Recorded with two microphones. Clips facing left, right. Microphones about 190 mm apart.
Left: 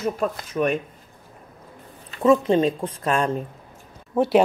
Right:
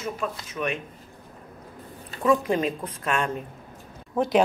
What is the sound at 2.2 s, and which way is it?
Speech, 25° left (ahead or behind).